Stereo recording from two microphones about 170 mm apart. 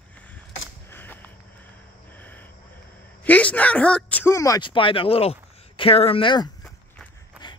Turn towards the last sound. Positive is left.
turn(degrees=30)  # may be behind; listen again after turning